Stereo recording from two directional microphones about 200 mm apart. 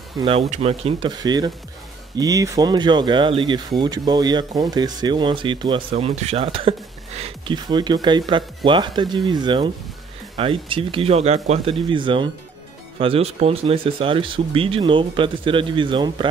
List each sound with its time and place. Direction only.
0.2 s speech: 30° right (ahead or behind)